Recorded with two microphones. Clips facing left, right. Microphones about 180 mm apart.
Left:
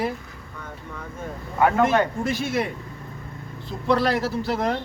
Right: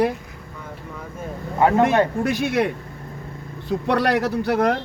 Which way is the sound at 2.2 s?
65° right (ahead or behind).